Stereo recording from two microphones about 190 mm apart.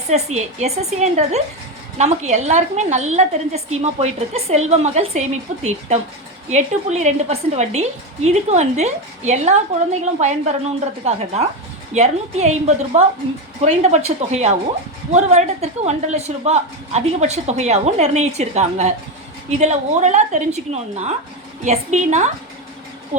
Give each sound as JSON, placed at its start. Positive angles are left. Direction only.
{"t": 0.1, "sound": "a woman's voice", "side_deg": -35}
{"t": 6.5, "sound": "a woman's voice", "side_deg": -35}
{"t": 11.9, "sound": "a woman's voice", "side_deg": -35}